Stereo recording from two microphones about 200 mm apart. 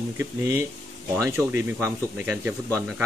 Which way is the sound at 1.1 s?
15° right (ahead or behind).